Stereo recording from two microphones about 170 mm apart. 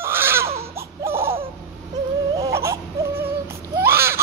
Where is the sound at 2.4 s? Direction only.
20° right (ahead or behind).